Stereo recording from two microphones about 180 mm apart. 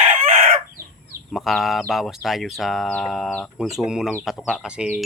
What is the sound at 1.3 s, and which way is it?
Speech, centre (ahead or behind).